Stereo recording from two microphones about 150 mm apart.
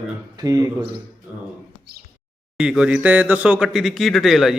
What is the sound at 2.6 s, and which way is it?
Speech, 5° right (ahead or behind).